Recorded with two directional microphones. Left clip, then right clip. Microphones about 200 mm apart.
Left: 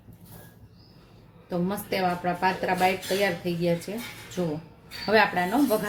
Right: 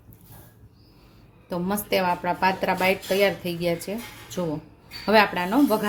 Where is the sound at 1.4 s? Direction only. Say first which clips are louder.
Right 2 dB; 55° right (ahead or behind).